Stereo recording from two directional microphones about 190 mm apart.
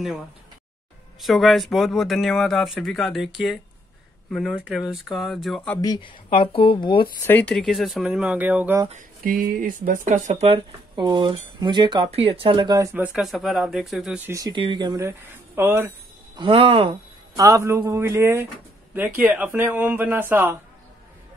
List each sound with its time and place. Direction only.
1.2 s speech: centre (ahead or behind)
5.8 s speech: 25° left (ahead or behind)
7.2 s speech: 10° left (ahead or behind); by 8.8 s 10° right (ahead or behind)
9.2 s speech: 50° right (ahead or behind); by 15.9 s 10° right (ahead or behind)
16.3 s speech: 25° right (ahead or behind)
17.4 s speech: 15° right (ahead or behind)